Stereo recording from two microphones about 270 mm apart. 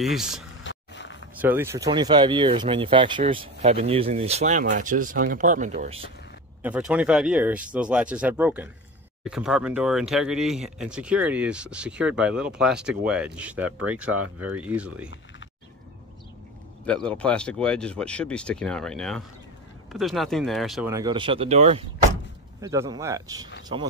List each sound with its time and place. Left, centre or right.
0.0 s speech: centre
0.7 s a sound: left
1.4 s speech: centre; by 6.0 s right
6.6 s speech: centre
16.8 s speech: centre
20.9 s speech: centre
22.6 s speech: centre